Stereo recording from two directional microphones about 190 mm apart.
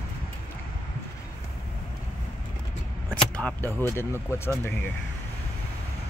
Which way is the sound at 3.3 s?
10° left (ahead or behind).